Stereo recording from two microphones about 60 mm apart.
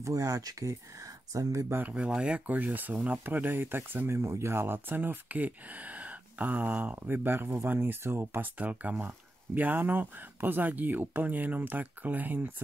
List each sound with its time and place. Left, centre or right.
0.0 s speech: right
1.9 s speech: centre
3.3 s speech: right
4.1 s speech: right
7.0 s speech: right
8.4 s speech: right